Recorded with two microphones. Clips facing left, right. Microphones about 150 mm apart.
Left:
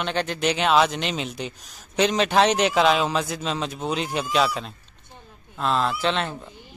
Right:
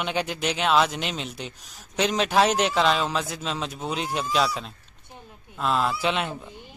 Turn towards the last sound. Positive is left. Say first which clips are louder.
# left 1 dB
turn(degrees=-10)  # may be behind; listen again after turning